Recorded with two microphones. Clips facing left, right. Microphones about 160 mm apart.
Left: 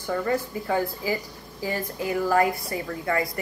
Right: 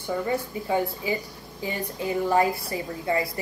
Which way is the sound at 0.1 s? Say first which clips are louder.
Left 1 dB; 15° right (ahead or behind).